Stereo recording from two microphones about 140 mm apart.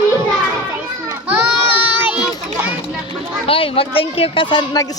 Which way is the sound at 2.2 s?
10° right (ahead or behind).